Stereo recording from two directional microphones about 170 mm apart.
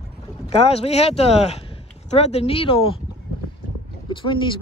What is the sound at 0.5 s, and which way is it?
Speech, 35° left (ahead or behind).